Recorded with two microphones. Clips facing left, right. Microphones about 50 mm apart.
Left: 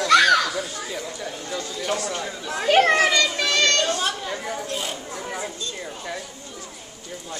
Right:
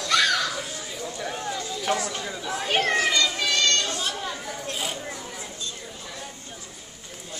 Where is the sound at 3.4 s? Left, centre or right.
Left.